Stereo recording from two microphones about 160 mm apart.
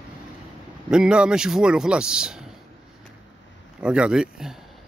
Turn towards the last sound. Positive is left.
turn(degrees=-5)  # may be behind; listen again after turning